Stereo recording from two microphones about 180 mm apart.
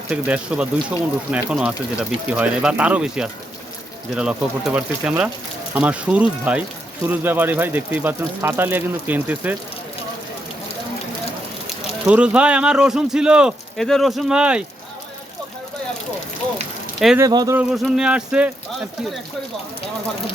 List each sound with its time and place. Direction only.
0.1 s speech: 5° right (ahead or behind)
12.0 s speech: 5° right (ahead or behind)
17.2 s speech: 20° right (ahead or behind)
17.6 s speech: centre (ahead or behind)